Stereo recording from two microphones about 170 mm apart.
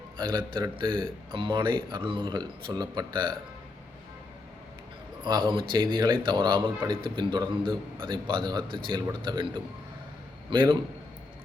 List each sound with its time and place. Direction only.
0.2 s speech: 25° right (ahead or behind)
5.2 s speech: 30° right (ahead or behind)
7.6 s a man's voice: 5° left (ahead or behind)
8.0 s speech: 30° right (ahead or behind)
10.5 s speech: 30° right (ahead or behind)